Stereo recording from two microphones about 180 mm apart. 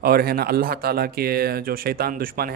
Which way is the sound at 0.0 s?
55° right (ahead or behind).